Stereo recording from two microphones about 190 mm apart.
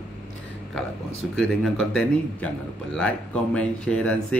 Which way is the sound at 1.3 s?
5° left (ahead or behind).